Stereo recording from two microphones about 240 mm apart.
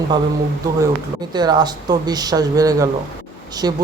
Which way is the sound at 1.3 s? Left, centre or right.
Centre.